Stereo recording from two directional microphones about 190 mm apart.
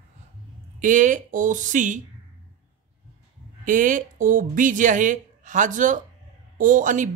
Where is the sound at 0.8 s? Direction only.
40° right (ahead or behind).